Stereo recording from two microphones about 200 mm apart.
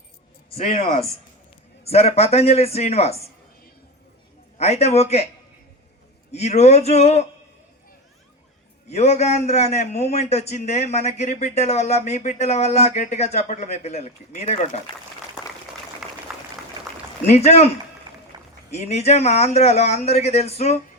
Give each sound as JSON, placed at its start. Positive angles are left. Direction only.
{"t": 0.5, "sound": "a man's voice", "side_deg": 30}
{"t": 4.5, "sound": "a man's voice", "side_deg": 30}
{"t": 6.3, "sound": "a man's voice", "side_deg": 35}
{"t": 8.9, "sound": "a man's voice", "side_deg": 35}
{"t": 16.3, "sound": "a sound", "side_deg": 0}
{"t": 17.2, "sound": "a man's voice", "side_deg": 35}
{"t": 18.3, "sound": "a sound", "side_deg": -20}
{"t": 18.7, "sound": "a man's voice", "side_deg": 35}